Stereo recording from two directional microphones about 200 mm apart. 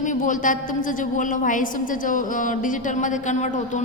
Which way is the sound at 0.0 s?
40° left (ahead or behind).